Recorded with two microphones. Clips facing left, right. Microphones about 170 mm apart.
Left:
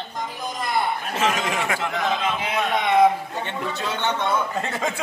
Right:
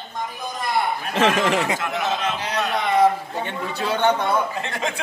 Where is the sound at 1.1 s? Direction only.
65° right (ahead or behind).